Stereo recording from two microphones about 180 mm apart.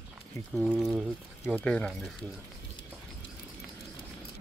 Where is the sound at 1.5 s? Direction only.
10° left (ahead or behind).